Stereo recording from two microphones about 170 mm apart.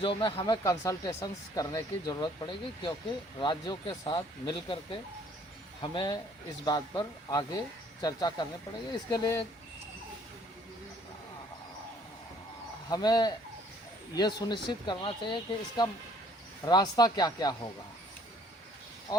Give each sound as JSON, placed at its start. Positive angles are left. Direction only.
{"t": 0.0, "sound": "speech", "side_deg": 30}
{"t": 12.9, "sound": "speech", "side_deg": 25}